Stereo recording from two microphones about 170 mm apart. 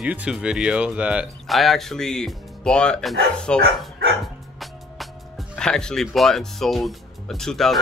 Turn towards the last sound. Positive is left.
turn(degrees=0)  # may be behind; listen again after turning